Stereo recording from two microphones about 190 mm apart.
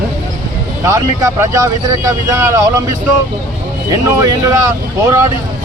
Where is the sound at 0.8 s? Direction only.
15° right (ahead or behind).